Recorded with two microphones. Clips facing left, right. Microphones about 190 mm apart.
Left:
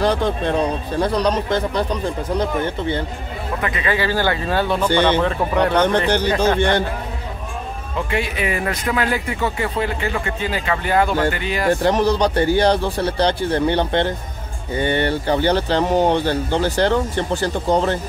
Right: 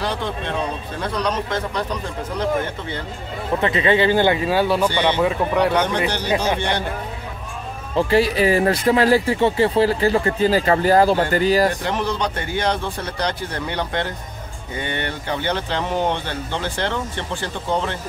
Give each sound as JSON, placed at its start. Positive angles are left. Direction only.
{"t": 0.0, "sound": "speech", "side_deg": 45}
{"t": 3.6, "sound": "speech", "side_deg": -25}
{"t": 7.9, "sound": "speech", "side_deg": -30}
{"t": 11.8, "sound": "speech", "side_deg": 40}